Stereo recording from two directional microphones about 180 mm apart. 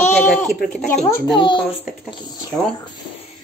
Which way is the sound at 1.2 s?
25° left (ahead or behind).